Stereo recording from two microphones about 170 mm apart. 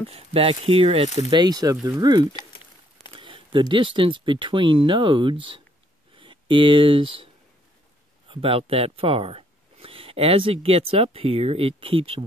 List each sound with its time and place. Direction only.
0.1 s speech: 35° right (ahead or behind)
1.3 s speech: 25° right (ahead or behind)
8.3 s speech: 35° right (ahead or behind)